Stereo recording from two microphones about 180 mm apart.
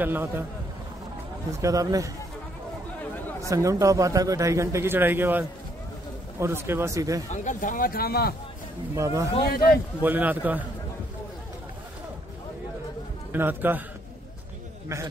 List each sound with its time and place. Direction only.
0.0 s a man's voice: 10° right (ahead or behind)
1.6 s a man's voice: 20° right (ahead or behind)
3.3 s a man's voice: 20° right (ahead or behind)
7.4 s speech: 50° left (ahead or behind)
8.9 s a man's voice: 15° right (ahead or behind)
13.3 s a man's voice: 10° right (ahead or behind)